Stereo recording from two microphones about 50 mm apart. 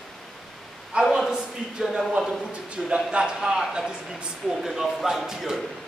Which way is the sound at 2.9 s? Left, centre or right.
Right.